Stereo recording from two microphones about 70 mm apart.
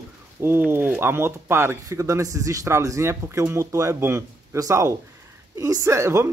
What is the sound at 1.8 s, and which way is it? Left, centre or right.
Speech, right.